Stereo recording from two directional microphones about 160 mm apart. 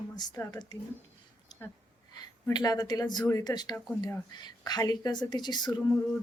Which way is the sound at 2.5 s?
25° left (ahead or behind).